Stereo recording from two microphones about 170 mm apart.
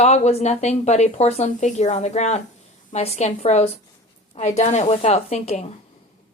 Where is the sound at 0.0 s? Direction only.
40° left (ahead or behind).